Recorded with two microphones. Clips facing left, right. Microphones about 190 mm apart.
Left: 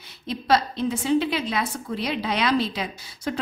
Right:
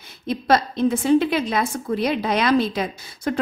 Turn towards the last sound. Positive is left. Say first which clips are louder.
# right 4 dB
turn(degrees=-50)  # may be behind; listen again after turning